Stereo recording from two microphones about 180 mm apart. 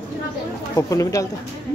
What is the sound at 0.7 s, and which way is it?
Speech, 20° left (ahead or behind).